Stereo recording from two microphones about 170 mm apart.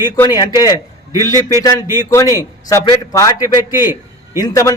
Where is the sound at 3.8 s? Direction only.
15° right (ahead or behind).